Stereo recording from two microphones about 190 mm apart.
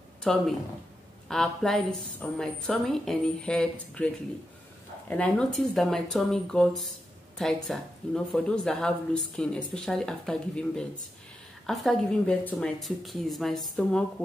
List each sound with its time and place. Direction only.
0.3 s speech: centre (ahead or behind)